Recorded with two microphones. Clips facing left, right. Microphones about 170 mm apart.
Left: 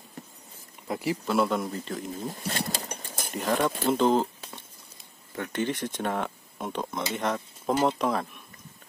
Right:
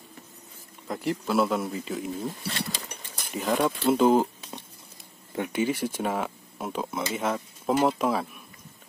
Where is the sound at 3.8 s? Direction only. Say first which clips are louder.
Right 3 dB; 10° right (ahead or behind).